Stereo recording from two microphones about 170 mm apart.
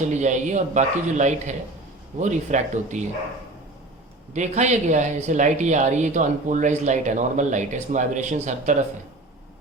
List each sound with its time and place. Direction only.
0.0 s speech: 45° right (ahead or behind)
4.4 s speech: 45° right (ahead or behind)